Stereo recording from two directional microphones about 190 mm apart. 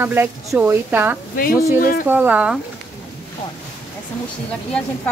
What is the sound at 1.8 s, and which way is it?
Speech, 50° left (ahead or behind).